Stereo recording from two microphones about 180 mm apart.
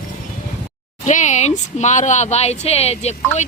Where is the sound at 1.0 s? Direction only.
40° left (ahead or behind).